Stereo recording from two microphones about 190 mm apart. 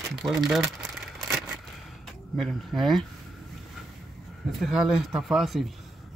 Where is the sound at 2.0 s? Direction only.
Centre (ahead or behind).